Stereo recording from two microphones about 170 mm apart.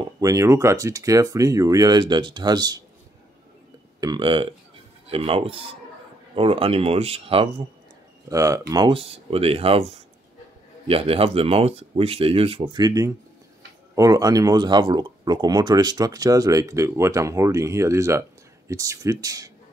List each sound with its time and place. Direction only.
0.0 s speech: 20° right (ahead or behind)
4.0 s speech: 25° right (ahead or behind)
8.3 s speech: 20° right (ahead or behind)